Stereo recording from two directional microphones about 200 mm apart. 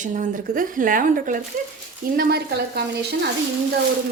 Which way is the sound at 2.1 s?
55° right (ahead or behind).